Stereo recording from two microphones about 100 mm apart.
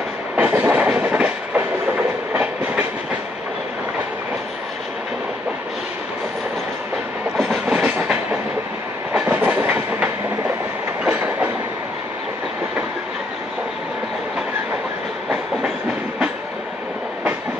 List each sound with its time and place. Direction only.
0.4 s train: 15° right (ahead or behind)
7.3 s train: 5° right (ahead or behind)
7.7 s train: 15° right (ahead or behind)
9.2 s train: 15° right (ahead or behind)